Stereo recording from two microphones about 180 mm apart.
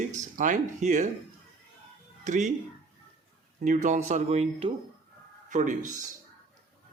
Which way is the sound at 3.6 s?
45° right (ahead or behind).